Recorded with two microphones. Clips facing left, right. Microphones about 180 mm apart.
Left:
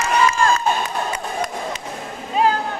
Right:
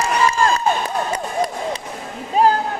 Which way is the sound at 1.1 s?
35° right (ahead or behind).